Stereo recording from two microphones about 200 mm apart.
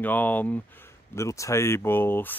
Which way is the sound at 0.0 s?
10° left (ahead or behind).